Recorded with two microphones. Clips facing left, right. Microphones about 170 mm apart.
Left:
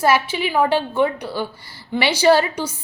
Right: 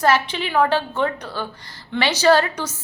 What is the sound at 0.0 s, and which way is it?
A woman's voice, 10° left (ahead or behind).